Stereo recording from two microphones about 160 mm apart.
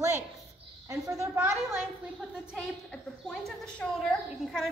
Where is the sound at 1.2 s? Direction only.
15° right (ahead or behind).